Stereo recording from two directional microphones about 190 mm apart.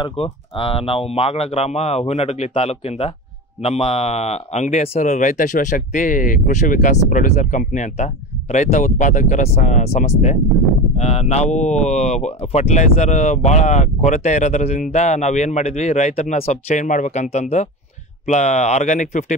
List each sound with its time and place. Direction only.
0.0 s speech: 30° left (ahead or behind)